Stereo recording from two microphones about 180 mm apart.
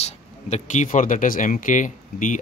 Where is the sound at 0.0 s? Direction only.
40° left (ahead or behind).